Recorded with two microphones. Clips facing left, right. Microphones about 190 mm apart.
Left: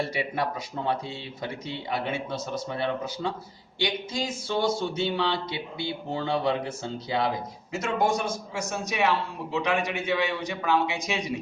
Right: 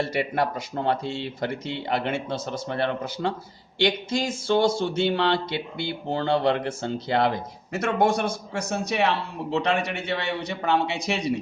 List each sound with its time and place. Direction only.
0.1 s speech: 60° right (ahead or behind)
3.8 s speech: 75° right (ahead or behind)